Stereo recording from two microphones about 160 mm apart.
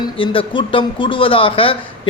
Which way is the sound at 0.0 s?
30° left (ahead or behind).